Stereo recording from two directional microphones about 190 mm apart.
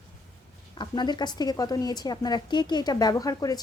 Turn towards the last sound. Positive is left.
turn(degrees=20)  # may be behind; listen again after turning